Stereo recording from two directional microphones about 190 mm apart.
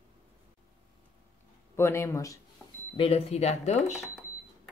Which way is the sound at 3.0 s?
30° left (ahead or behind).